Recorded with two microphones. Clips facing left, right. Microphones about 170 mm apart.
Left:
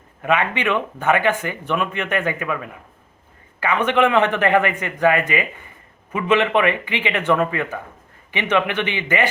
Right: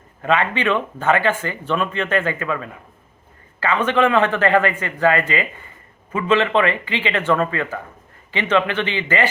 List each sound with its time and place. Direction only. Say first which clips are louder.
0.2 s speech: right 1 dB; 15° left (ahead or behind)